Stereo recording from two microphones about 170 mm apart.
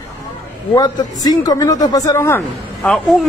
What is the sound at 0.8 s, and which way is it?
Speech, 20° left (ahead or behind).